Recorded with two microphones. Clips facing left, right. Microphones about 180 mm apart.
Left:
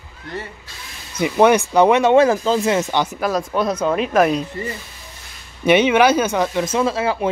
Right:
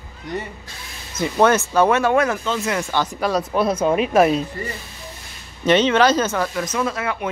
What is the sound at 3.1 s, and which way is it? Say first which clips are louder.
Speech: even; centre (ahead or behind).